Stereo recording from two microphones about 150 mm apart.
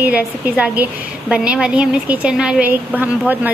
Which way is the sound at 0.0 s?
10° right (ahead or behind).